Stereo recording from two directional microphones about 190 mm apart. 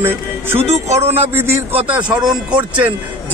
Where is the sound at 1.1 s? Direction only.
10° right (ahead or behind).